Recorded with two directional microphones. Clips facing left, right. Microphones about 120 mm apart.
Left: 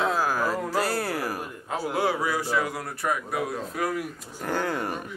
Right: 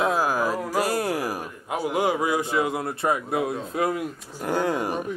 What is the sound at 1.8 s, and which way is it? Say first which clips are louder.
A man's voice: right 3 dB; 15° right (ahead or behind).